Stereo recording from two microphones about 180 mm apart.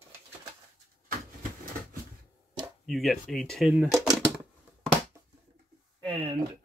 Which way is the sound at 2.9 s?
Centre (ahead or behind).